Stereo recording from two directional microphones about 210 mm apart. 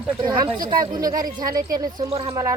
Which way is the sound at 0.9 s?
20° right (ahead or behind).